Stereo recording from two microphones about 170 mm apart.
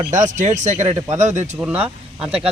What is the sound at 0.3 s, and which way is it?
Speech, 45° right (ahead or behind).